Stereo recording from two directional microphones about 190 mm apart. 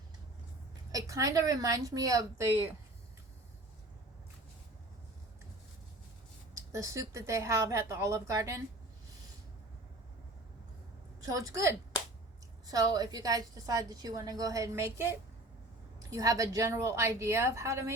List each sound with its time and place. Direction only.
0.9 s speech: 15° right (ahead or behind)
6.7 s speech: 15° right (ahead or behind)
11.2 s a woman's voice: 20° right (ahead or behind)
16.0 s speech: 15° right (ahead or behind)